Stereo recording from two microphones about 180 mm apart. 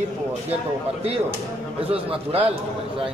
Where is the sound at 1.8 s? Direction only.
35° right (ahead or behind).